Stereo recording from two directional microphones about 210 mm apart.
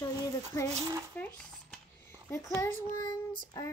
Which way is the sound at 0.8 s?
15° right (ahead or behind).